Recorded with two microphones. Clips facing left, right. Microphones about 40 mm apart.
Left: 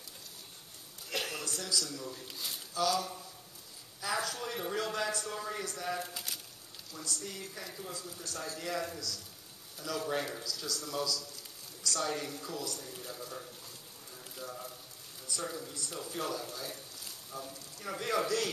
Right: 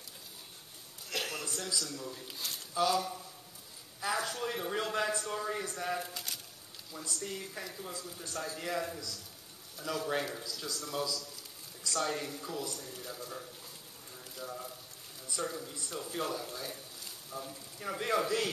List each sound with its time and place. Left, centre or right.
1.1 s a sound: centre
1.8 s speech: centre
2.7 s speech: centre
3.0 s speech: centre
6.9 s speech: centre
10.4 s speech: centre
12.7 s a sound: centre
15.4 s speech: centre